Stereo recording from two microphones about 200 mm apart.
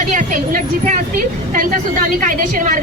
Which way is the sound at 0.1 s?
40° right (ahead or behind).